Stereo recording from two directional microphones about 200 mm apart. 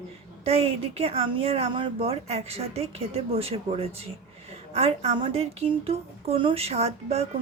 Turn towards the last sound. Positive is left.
turn(degrees=-30)  # may be behind; listen again after turning